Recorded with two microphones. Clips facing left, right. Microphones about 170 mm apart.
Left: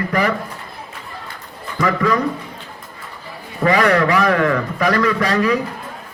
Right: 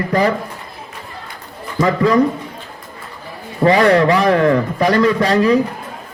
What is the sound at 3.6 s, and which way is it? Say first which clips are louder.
A man's voice: right 4 dB; 30° right (ahead or behind).